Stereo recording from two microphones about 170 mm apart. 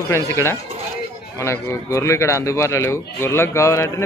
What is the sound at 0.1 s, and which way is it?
Speech, 15° left (ahead or behind).